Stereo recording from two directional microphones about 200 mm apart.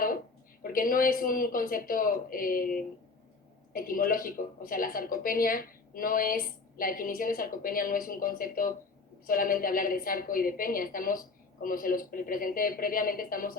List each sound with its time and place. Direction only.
0.6 s a woman's voice: 45° left (ahead or behind)